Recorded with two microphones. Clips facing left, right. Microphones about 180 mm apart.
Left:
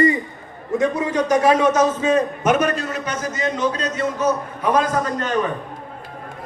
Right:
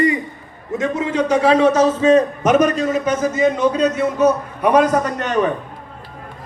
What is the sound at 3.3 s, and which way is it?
A man's voice, 55° right (ahead or behind).